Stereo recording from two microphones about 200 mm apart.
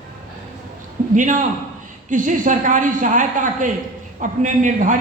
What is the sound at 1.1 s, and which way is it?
A woman's voice, 40° right (ahead or behind).